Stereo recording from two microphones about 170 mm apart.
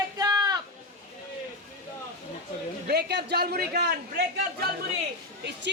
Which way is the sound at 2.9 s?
75° right (ahead or behind).